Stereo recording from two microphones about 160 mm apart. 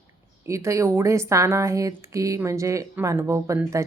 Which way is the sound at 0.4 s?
20° right (ahead or behind).